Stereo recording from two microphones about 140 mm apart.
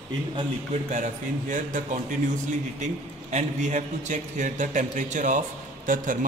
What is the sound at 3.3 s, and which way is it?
A man's voice, 60° right (ahead or behind).